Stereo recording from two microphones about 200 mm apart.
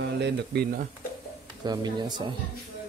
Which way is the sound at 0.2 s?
55° right (ahead or behind).